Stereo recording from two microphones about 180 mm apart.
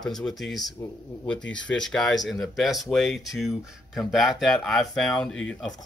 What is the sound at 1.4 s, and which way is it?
Speech, 90° left.